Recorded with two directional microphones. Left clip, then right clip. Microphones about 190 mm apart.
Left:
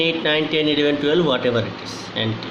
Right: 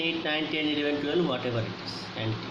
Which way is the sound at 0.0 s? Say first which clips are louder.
Left 10 dB; 45° left (ahead or behind).